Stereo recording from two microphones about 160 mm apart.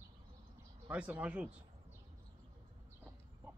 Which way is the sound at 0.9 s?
10° right (ahead or behind).